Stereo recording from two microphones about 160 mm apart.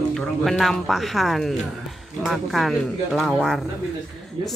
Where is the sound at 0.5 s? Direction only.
Centre (ahead or behind).